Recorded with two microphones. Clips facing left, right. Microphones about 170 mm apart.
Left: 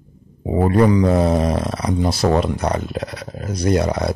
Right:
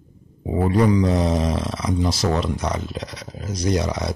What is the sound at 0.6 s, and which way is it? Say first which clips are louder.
Speech: left 3 dB; 55° left (ahead or behind).